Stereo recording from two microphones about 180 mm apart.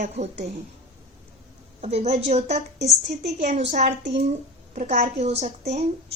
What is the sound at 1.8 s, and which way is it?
A woman's voice, 35° right (ahead or behind).